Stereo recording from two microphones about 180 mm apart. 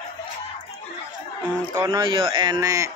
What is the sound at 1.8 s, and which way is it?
A man's voice, 25° right (ahead or behind).